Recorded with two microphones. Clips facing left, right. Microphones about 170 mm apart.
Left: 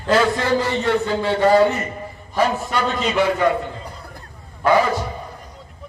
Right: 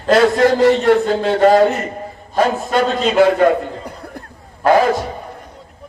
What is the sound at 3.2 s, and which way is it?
Speech, 60° right (ahead or behind).